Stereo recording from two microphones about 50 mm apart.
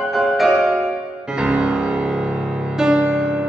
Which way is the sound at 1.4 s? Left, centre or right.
Right.